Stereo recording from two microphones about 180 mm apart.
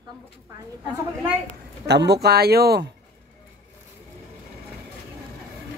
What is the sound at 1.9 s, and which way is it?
Speech, 70° right (ahead or behind).